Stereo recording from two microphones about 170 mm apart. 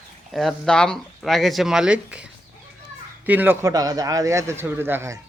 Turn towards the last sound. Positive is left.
turn(degrees=-15)  # may be behind; listen again after turning